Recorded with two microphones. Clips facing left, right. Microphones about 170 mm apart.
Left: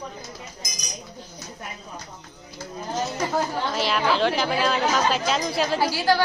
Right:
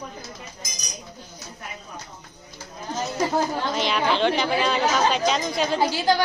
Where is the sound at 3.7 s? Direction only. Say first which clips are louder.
Even; centre (ahead or behind).